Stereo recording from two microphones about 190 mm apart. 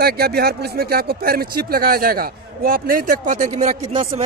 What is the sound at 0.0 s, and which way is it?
A man's voice, 55° right (ahead or behind).